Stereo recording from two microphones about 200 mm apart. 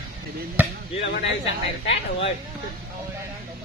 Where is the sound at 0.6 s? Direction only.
10° right (ahead or behind).